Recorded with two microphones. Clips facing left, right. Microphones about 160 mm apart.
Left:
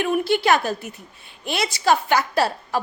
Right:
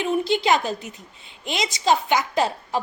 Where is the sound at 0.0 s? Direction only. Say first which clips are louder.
Left 1 dB; 20° right (ahead or behind).